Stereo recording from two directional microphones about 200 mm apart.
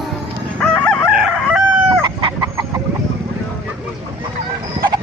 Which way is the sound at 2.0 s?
25° right (ahead or behind).